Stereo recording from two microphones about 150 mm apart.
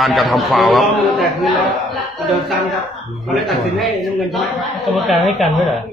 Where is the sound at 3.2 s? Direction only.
Centre (ahead or behind).